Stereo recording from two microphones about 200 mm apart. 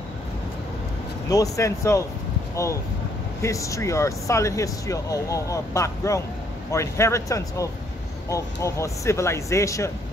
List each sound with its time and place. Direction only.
1.3 s speech: 15° left (ahead or behind)